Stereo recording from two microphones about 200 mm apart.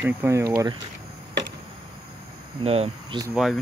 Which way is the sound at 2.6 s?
30° right (ahead or behind).